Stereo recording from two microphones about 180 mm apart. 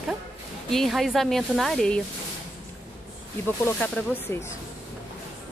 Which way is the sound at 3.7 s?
10° left (ahead or behind).